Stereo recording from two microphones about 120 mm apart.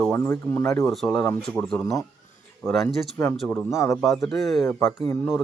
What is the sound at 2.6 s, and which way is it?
Speech, 25° left (ahead or behind).